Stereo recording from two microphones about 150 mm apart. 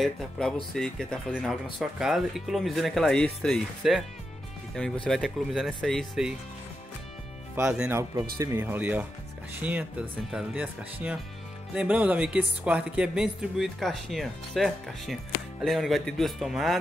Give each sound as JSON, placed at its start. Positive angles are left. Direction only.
{"t": 0.0, "sound": "speech", "side_deg": 0}
{"t": 7.5, "sound": "speech", "side_deg": -10}
{"t": 7.9, "sound": "speech", "side_deg": -20}